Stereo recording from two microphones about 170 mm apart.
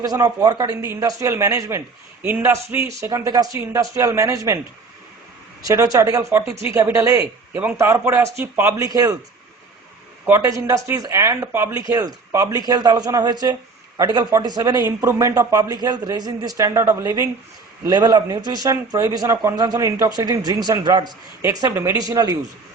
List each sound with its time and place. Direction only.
0.0 s a man's voice: 20° right (ahead or behind)
5.6 s a man's voice: 20° right (ahead or behind)
10.2 s speech: 15° right (ahead or behind)